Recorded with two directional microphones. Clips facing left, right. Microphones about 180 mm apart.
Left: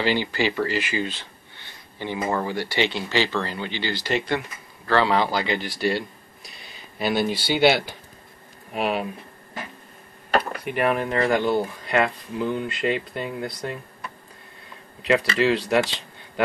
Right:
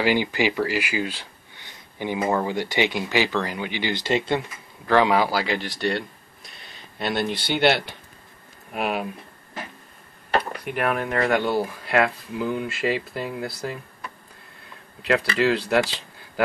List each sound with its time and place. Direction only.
0.0 s speech: 15° right (ahead or behind)
10.6 s speech: centre (ahead or behind)
15.0 s speech: centre (ahead or behind)